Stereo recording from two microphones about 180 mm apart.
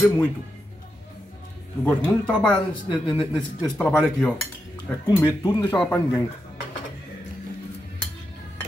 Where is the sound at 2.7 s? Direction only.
25° left (ahead or behind).